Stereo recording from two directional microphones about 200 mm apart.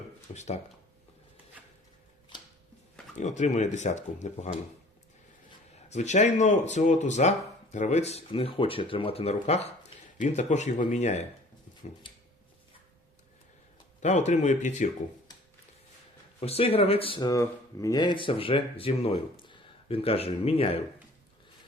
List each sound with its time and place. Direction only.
0.3 s speech: 35° left (ahead or behind)
3.2 s speech: 35° left (ahead or behind)
5.9 s speech: 35° left (ahead or behind)
14.0 s speech: 35° left (ahead or behind)
16.4 s speech: 30° left (ahead or behind)